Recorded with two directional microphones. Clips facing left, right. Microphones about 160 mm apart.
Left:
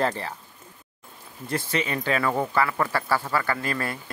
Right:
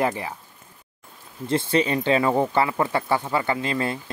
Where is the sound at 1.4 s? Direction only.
25° right (ahead or behind).